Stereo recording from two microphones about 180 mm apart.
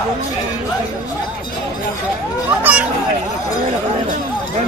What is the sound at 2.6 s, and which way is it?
Children playing, 10° right (ahead or behind).